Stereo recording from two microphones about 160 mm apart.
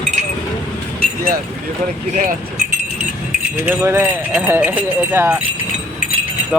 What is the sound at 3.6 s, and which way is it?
Speech, 15° right (ahead or behind).